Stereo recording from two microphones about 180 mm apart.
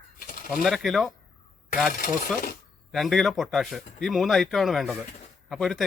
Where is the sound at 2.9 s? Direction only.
Centre (ahead or behind).